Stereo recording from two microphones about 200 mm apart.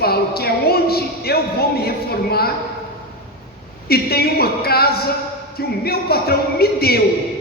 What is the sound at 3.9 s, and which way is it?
Speech, 50° left (ahead or behind).